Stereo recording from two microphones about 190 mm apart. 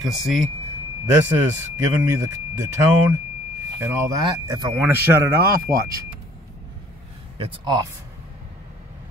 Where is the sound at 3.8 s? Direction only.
15° right (ahead or behind).